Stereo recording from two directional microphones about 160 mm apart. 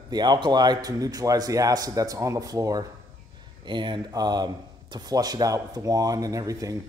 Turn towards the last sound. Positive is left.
turn(degrees=-20)  # may be behind; listen again after turning